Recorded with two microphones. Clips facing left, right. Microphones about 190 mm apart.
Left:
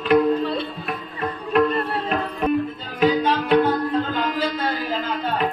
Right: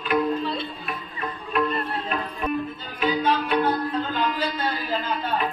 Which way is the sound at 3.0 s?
90° left.